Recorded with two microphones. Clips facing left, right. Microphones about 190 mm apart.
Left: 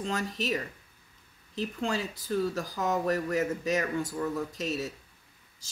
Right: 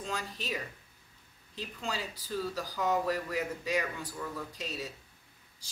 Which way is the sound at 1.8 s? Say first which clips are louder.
Left 4 dB; 55° left (ahead or behind).